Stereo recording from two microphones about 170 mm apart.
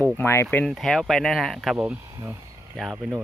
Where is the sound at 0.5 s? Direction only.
Centre (ahead or behind).